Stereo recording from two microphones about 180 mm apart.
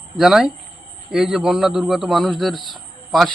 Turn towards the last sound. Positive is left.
turn(degrees=0)  # may be behind; listen again after turning